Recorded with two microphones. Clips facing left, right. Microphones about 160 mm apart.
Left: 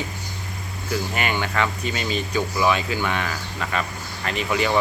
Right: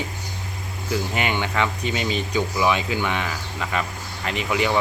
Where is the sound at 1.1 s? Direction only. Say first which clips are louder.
Even; 20° right (ahead or behind).